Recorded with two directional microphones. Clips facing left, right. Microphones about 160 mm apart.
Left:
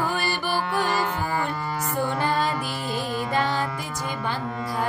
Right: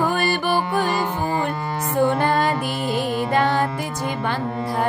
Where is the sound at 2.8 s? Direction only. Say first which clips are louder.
Right 5 dB; 60° right (ahead or behind).